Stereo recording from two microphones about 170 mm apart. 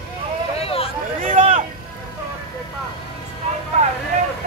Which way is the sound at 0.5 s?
35° left (ahead or behind).